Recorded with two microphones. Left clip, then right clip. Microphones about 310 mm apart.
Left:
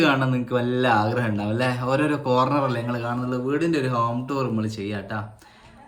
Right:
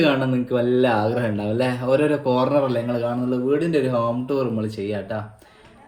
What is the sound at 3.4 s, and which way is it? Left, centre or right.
Speech, centre.